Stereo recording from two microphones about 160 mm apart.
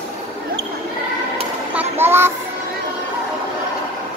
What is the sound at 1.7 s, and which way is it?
Child singing, 10° right (ahead or behind).